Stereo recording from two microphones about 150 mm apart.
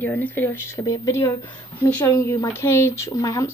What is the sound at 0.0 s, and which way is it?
Speech, 10° left (ahead or behind).